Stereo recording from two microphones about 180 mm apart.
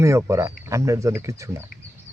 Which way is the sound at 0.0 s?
15° right (ahead or behind).